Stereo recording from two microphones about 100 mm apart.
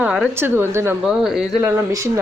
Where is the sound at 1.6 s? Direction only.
30° right (ahead or behind).